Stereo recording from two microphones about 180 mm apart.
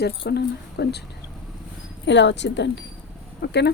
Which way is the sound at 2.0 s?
80° left.